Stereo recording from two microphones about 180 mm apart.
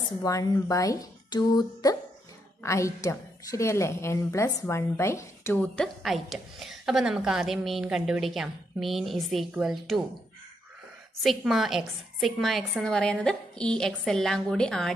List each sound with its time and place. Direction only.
0.2 s a woman's voice: 20° left (ahead or behind); by 10.0 s centre (ahead or behind)
11.2 s a woman's voice: centre (ahead or behind)